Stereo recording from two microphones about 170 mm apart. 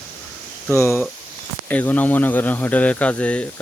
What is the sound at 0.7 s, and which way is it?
Speech, 15° left (ahead or behind).